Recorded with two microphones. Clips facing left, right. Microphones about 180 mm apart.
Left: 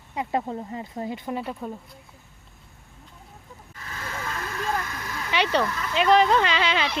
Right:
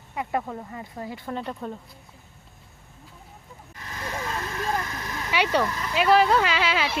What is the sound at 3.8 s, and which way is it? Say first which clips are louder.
Vehicle: right 2 dB; 20° right (ahead or behind).